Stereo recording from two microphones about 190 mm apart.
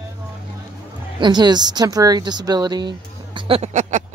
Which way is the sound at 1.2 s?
20° right (ahead or behind).